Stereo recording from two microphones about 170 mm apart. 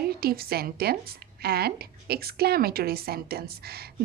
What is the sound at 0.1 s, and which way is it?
A woman's voice, 65° right (ahead or behind).